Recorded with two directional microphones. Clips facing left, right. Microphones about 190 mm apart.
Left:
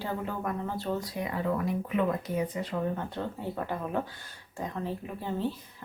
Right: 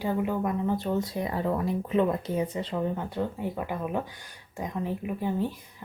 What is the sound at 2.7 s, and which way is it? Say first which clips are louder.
Speech: right 2 dB; 10° right (ahead or behind).